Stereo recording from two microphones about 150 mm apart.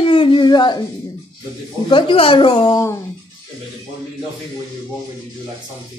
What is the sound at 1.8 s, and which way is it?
A woman's voice, 35° left (ahead or behind).